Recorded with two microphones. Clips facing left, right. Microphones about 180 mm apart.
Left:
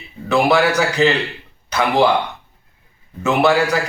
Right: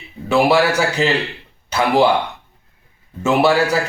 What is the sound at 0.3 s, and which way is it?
A man's voice, 5° right (ahead or behind).